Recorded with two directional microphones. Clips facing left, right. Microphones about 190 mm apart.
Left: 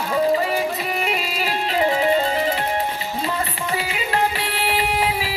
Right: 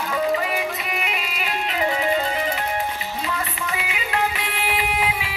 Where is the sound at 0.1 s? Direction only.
35° left (ahead or behind).